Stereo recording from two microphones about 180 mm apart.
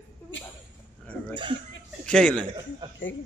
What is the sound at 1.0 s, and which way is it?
A woman's voice, 10° left (ahead or behind).